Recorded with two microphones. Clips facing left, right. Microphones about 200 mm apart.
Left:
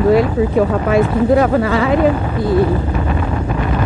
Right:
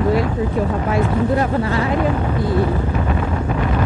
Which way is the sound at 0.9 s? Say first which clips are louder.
Left 6 dB; 90° left.